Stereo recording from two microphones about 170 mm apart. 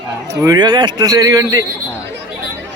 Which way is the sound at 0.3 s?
20° right (ahead or behind).